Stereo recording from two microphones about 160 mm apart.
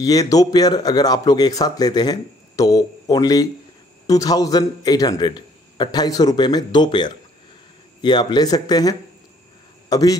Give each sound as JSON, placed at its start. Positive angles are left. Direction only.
{"t": 0.0, "sound": "a man's voice", "side_deg": 20}